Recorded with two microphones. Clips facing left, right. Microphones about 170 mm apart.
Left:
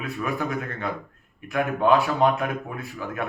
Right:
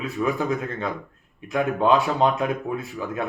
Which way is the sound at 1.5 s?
20° right (ahead or behind).